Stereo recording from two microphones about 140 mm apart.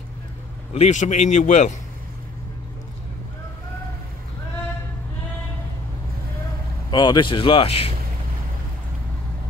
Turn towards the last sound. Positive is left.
turn(degrees=45)  # may be behind; listen again after turning